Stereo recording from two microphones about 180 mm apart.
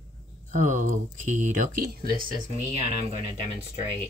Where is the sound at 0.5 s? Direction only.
45° right (ahead or behind).